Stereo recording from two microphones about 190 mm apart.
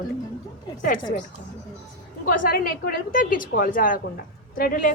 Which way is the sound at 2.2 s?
50° left (ahead or behind).